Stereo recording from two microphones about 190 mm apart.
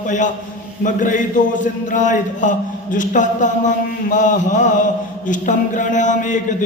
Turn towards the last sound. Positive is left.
turn(degrees=40)  # may be behind; listen again after turning